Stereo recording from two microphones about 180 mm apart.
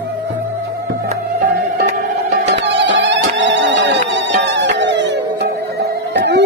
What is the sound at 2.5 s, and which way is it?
Music, 75° right (ahead or behind).